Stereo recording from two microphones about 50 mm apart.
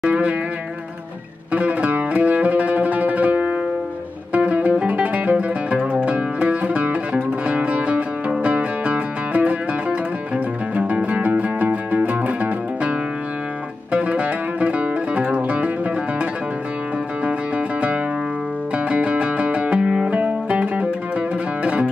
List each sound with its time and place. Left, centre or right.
0.0 s music: right
1.5 s music: right
13.9 s music: right